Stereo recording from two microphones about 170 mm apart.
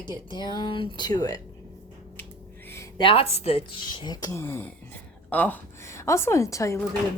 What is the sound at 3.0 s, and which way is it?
Speech, 30° left (ahead or behind).